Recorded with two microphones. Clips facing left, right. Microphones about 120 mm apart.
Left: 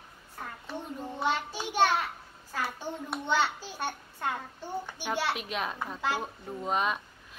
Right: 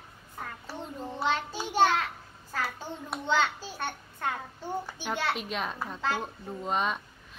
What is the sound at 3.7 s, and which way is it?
Child singing, 5° left (ahead or behind).